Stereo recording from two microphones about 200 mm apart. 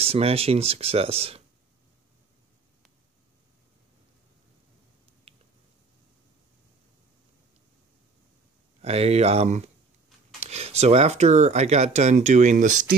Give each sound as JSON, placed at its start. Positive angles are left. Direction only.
{"t": 0.0, "sound": "speech", "side_deg": -30}
{"t": 8.8, "sound": "speech", "side_deg": -30}